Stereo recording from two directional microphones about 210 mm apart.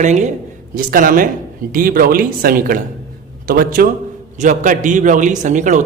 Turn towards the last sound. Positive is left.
turn(degrees=-35)  # may be behind; listen again after turning